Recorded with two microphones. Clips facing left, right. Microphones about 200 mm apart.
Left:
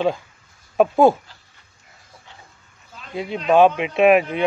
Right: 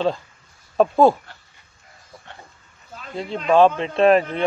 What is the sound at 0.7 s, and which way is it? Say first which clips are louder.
Speech: left 1 dB; 15° left (ahead or behind).